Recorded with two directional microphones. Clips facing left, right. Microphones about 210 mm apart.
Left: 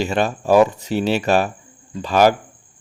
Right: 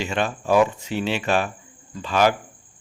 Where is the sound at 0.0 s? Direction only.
40° left (ahead or behind).